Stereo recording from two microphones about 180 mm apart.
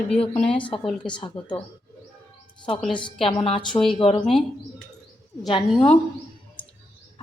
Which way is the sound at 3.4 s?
25° left (ahead or behind).